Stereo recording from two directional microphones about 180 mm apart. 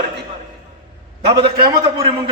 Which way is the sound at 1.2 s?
30° right (ahead or behind).